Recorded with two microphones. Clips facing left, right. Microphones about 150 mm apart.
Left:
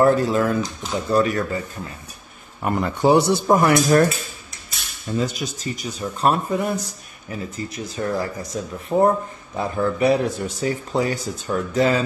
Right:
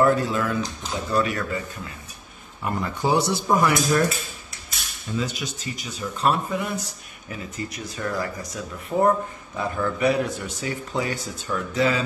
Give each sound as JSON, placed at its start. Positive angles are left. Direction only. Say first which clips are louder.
{"t": 0.0, "sound": "speech", "louder": "left 4 dB", "side_deg": 40}
{"t": 2.6, "sound": "speech", "louder": "left 6 dB", "side_deg": 60}
{"t": 5.1, "sound": "speech", "louder": "left 4 dB", "side_deg": 40}
{"t": 7.2, "sound": "speech", "louder": "left 3 dB", "side_deg": 30}